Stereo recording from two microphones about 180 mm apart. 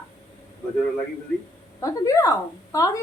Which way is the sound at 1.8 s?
15° left (ahead or behind).